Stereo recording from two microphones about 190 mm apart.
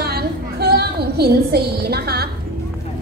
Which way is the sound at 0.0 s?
55° right (ahead or behind).